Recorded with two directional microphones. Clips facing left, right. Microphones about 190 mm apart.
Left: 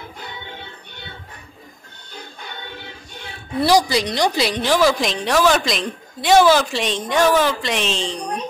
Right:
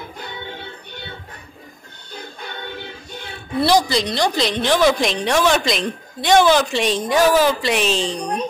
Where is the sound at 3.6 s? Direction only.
10° left (ahead or behind); by 8.0 s 5° right (ahead or behind).